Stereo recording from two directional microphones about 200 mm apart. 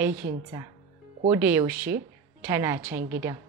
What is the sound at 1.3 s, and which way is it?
A woman's voice, 10° right (ahead or behind).